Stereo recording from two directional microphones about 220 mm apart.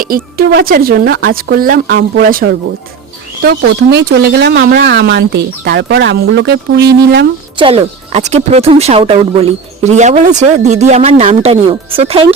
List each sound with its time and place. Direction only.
0.3 s speech: 45° right (ahead or behind)
7.5 s speech: 25° right (ahead or behind)